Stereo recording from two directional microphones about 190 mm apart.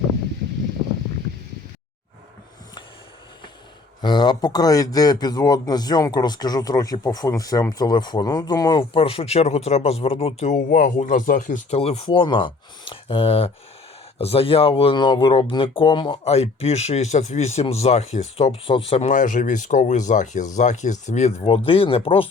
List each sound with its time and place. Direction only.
4.0 s a man's voice: 25° left (ahead or behind)